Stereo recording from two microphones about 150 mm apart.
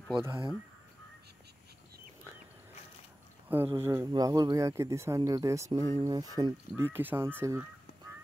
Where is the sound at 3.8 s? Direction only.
20° right (ahead or behind).